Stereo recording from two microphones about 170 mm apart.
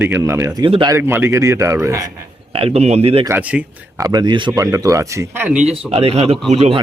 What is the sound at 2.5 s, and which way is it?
Speech, 35° right (ahead or behind).